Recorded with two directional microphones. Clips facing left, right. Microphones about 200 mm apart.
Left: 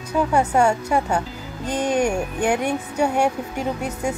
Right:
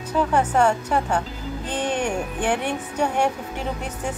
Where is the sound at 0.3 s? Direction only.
10° left (ahead or behind).